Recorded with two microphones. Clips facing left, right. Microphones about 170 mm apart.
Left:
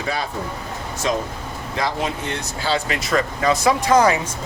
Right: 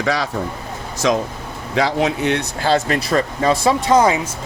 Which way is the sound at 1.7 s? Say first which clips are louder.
Right 6 dB; 75° right (ahead or behind).